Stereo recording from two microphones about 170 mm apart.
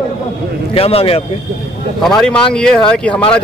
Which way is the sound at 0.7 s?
35° left (ahead or behind).